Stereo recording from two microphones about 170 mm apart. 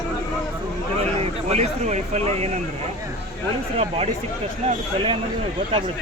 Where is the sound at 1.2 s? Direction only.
40° right (ahead or behind).